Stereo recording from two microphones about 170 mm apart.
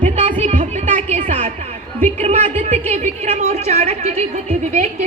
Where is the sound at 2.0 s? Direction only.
40° right (ahead or behind).